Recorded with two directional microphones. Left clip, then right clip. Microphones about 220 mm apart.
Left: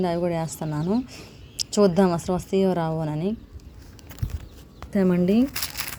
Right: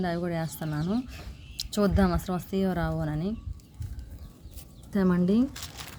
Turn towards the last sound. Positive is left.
turn(degrees=40)  # may be behind; listen again after turning